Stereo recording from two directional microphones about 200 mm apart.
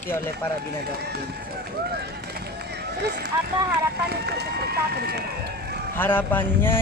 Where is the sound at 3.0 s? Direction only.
55° right (ahead or behind).